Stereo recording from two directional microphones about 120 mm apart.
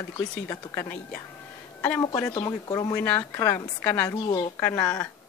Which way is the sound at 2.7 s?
35° left (ahead or behind).